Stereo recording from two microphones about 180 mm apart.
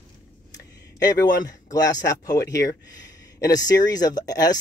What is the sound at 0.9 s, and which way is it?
Speech, 20° left (ahead or behind).